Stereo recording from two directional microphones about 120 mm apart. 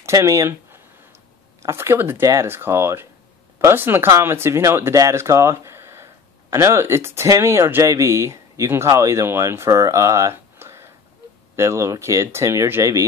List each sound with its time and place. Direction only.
0.0 s speech: 25° right (ahead or behind)